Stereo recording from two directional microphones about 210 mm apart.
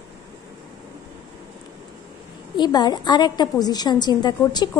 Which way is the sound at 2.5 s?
20° left (ahead or behind).